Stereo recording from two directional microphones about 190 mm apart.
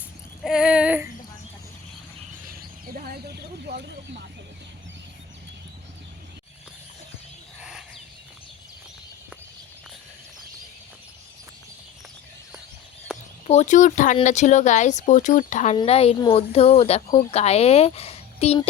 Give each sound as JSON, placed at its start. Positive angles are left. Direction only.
{"t": 0.4, "sound": "child singing", "side_deg": -5}
{"t": 2.5, "sound": "a sound", "side_deg": -50}
{"t": 7.6, "sound": "bird", "side_deg": -5}
{"t": 13.1, "sound": "chicken", "side_deg": -5}
{"t": 13.5, "sound": "speech", "side_deg": 40}